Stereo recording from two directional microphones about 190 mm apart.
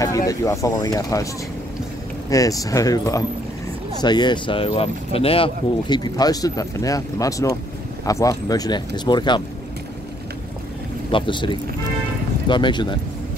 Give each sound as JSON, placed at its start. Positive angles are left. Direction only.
{"t": 0.3, "sound": "speech", "side_deg": 15}
{"t": 11.1, "sound": "speech", "side_deg": 25}